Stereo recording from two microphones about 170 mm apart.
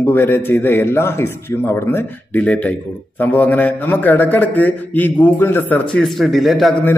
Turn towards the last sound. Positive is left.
turn(degrees=0)  # may be behind; listen again after turning